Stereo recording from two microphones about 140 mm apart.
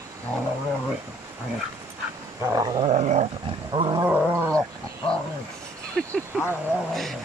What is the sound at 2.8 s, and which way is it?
Dog, 50° right (ahead or behind).